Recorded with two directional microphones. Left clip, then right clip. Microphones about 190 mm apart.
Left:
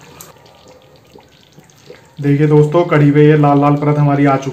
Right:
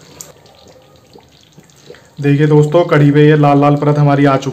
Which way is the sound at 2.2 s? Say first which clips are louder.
Even; 20° right (ahead or behind).